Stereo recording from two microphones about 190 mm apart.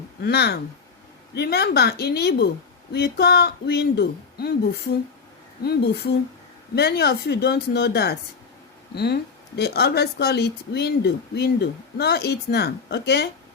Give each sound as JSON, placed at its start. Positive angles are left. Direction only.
{"t": 0.2, "sound": "speech", "side_deg": 60}
{"t": 5.6, "sound": "speech", "side_deg": 60}